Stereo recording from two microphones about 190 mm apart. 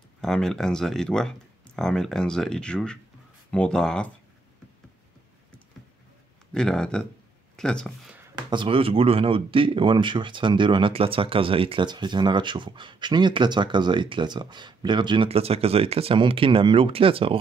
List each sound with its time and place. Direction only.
0.2 s speech: 5° left (ahead or behind)
6.5 s speech: 5° left (ahead or behind)
8.5 s speech: 25° right (ahead or behind)